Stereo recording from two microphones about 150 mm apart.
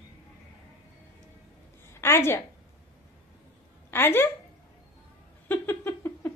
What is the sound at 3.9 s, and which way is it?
Speech, 15° left (ahead or behind).